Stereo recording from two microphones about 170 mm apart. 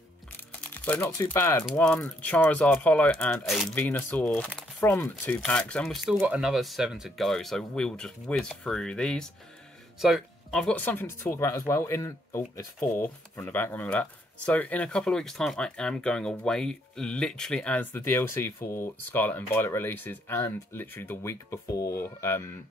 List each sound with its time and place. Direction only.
0.5 s music: 10° left (ahead or behind)
1.3 s speech: 15° left (ahead or behind)